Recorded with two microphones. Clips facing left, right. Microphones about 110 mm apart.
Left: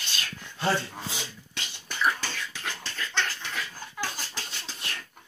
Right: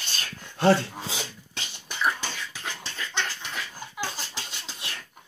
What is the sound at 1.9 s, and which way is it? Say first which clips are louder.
Beatboxing: even; 20° right (ahead or behind).